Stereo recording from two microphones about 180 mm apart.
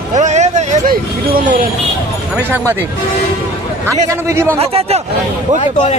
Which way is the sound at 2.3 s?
10° right (ahead or behind).